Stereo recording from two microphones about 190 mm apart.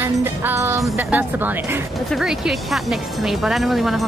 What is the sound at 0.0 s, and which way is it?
Music, 10° right (ahead or behind).